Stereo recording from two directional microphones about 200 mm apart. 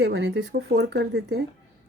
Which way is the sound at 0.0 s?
60° right (ahead or behind).